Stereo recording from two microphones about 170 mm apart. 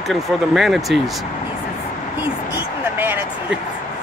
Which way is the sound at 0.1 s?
Centre (ahead or behind).